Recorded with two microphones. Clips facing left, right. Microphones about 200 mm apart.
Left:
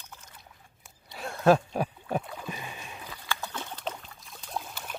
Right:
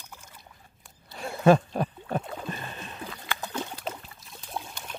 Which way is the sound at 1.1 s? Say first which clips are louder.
Right 2 dB; 5° right (ahead or behind).